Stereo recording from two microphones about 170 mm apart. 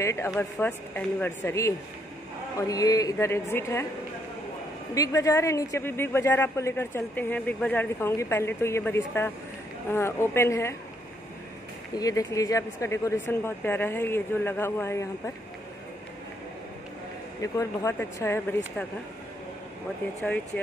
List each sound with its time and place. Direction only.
0.0 s a woman's voice: 15° left (ahead or behind)
2.7 s a woman's voice: 20° left (ahead or behind)
4.9 s a woman's voice: 20° left (ahead or behind)
12.0 s a woman's voice: 20° left (ahead or behind)
17.4 s a woman's voice: 20° left (ahead or behind)
20.2 s a woman's voice: 10° left (ahead or behind)